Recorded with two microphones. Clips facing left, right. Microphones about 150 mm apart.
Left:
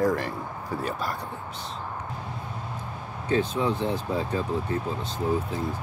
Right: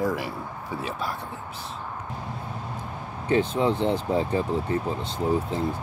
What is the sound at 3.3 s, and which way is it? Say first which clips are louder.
Speech: right 2 dB; 20° right (ahead or behind).